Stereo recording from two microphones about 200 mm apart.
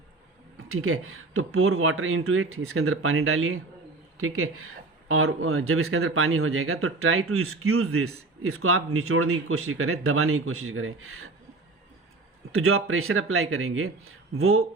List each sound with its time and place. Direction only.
0.7 s speech: 90° right
12.5 s speech: 90° right